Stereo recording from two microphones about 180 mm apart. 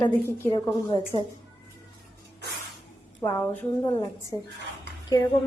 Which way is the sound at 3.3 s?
10° left (ahead or behind).